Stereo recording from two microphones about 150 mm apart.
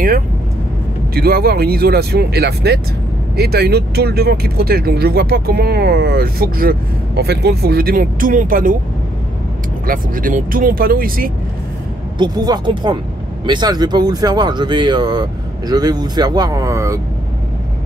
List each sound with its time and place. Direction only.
1.1 s speech: 90° right; by 8.7 s 65° right (ahead or behind)
9.8 s speech: 65° right (ahead or behind)
12.2 s speech: 30° right (ahead or behind)